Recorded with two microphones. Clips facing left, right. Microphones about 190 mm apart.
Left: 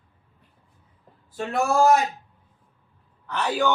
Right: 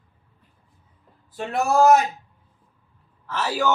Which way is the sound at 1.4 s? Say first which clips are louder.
Right 2 dB; centre (ahead or behind).